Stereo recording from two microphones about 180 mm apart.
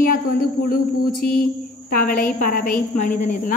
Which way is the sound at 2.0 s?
50° left (ahead or behind).